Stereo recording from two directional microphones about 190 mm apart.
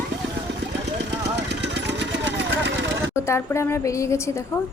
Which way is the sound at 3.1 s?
15° left (ahead or behind).